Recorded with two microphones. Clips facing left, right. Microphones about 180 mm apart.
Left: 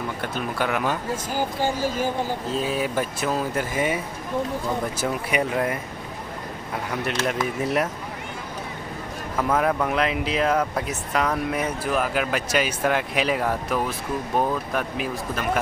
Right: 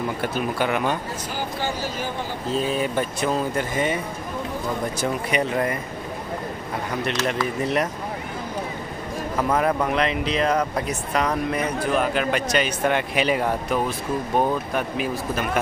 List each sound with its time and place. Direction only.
0.2 s speech: 5° right (ahead or behind)
1.3 s speech: 45° left (ahead or behind)
2.5 s speech: 5° left (ahead or behind)
5.0 s speech: 5° left (ahead or behind)
7.6 s speech: 5° left (ahead or behind)
9.4 s speech: centre (ahead or behind)